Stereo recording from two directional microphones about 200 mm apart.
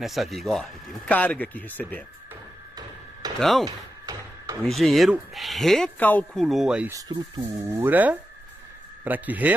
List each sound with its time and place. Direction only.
0.0 s speech: centre (ahead or behind)
3.3 s speech: centre (ahead or behind)
3.6 s a sound: 20° right (ahead or behind)
4.6 s speech: centre (ahead or behind)
6.9 s speech: 20° right (ahead or behind)